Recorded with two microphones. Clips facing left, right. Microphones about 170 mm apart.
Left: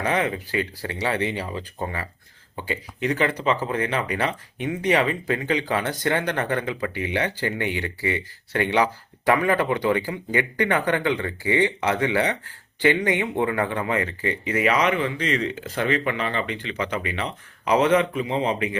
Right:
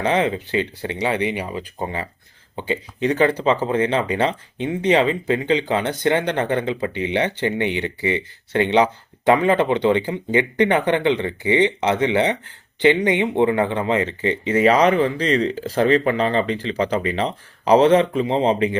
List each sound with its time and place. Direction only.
0.0 s speech: 25° right (ahead or behind)